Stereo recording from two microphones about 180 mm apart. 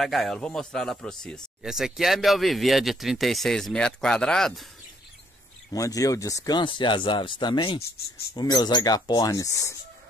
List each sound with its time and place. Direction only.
0.0 s speech: centre (ahead or behind)
5.7 s speech: 20° left (ahead or behind)